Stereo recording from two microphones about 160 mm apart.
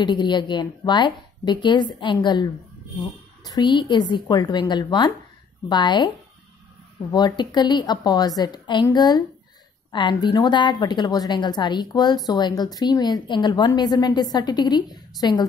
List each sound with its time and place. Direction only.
0.0 s a woman's voice: 30° left (ahead or behind)